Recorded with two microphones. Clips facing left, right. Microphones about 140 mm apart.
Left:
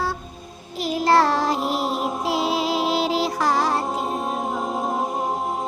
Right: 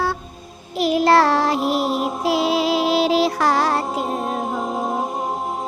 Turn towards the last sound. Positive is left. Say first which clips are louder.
# right 3 dB
turn(degrees=-70)  # may be behind; listen again after turning